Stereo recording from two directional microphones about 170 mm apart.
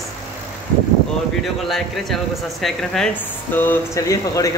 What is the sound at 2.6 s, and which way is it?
Speech, centre (ahead or behind).